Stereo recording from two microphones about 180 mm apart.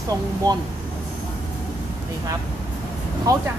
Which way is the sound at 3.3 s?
20° right (ahead or behind).